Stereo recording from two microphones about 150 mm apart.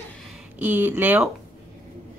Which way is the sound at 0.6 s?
10° right (ahead or behind).